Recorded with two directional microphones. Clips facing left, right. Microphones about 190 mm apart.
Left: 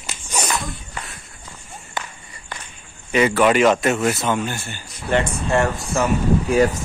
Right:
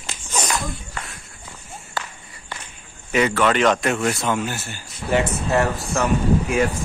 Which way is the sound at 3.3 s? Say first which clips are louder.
Left 4 dB; 10° left (ahead or behind).